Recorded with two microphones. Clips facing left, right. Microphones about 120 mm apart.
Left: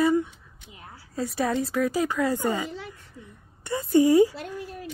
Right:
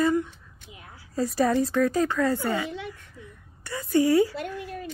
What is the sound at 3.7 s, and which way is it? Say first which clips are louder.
Speech: left 3 dB; 20° left (ahead or behind).